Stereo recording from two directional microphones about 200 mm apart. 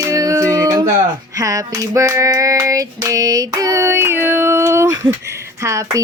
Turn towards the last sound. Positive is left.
turn(degrees=-15)  # may be behind; listen again after turning